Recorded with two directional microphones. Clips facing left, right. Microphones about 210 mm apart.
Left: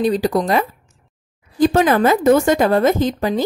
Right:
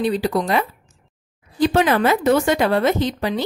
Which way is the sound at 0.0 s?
40° left (ahead or behind).